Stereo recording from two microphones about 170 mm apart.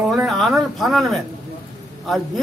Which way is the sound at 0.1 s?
Centre (ahead or behind).